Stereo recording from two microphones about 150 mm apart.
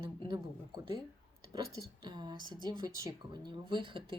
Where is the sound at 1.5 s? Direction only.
30° right (ahead or behind).